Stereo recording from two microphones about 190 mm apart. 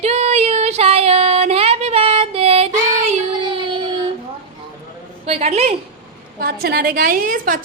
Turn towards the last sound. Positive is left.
turn(degrees=-45)  # may be behind; listen again after turning